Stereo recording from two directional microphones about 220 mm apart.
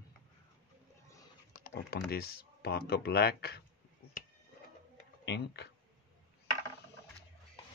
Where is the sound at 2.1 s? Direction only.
45° left (ahead or behind).